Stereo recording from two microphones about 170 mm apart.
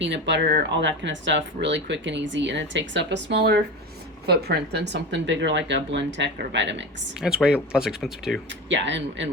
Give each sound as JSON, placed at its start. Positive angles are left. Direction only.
{"t": 0.0, "sound": "speech", "side_deg": -90}
{"t": 7.2, "sound": "speech", "side_deg": -5}
{"t": 8.7, "sound": "speech", "side_deg": -90}